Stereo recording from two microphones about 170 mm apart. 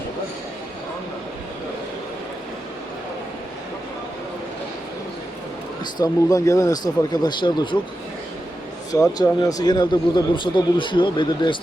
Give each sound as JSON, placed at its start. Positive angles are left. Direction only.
{"t": 5.8, "sound": "speech", "side_deg": 25}
{"t": 8.9, "sound": "speech", "side_deg": 20}